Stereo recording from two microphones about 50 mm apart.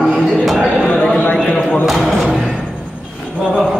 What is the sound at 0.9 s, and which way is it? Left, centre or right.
A man's voice, centre.